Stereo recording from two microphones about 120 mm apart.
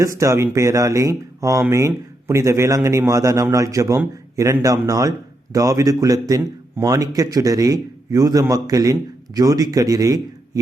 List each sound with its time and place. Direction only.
0.0 s a man's voice: 25° right (ahead or behind)